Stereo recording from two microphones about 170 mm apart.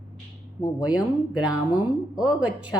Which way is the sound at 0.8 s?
5° right (ahead or behind).